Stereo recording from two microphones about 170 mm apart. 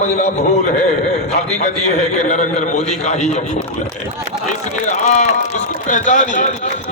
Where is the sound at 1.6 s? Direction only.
45° left (ahead or behind).